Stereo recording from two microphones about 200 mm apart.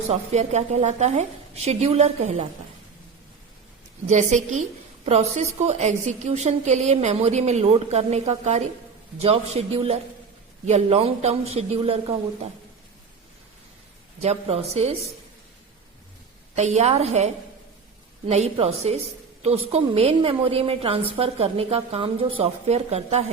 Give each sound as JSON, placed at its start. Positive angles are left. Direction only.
{"t": 0.1, "sound": "a woman's voice", "side_deg": -35}
{"t": 4.1, "sound": "a woman's voice", "side_deg": -35}
{"t": 14.2, "sound": "a woman's voice", "side_deg": -30}
{"t": 16.6, "sound": "a woman's voice", "side_deg": -35}